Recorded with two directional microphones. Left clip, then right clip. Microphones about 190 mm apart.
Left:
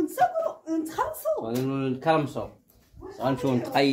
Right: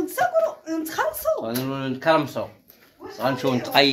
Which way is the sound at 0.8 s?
30° left (ahead or behind).